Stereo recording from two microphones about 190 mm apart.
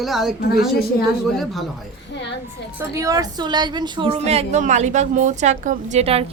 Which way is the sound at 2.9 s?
20° right (ahead or behind).